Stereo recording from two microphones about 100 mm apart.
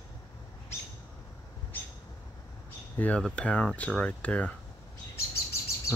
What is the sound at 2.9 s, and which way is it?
Speech, 15° left (ahead or behind).